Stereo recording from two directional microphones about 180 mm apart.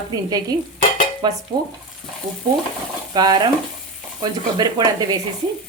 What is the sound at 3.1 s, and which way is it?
Speech, 25° right (ahead or behind).